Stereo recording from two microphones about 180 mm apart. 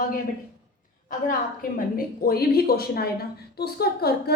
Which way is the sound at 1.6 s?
55° left (ahead or behind).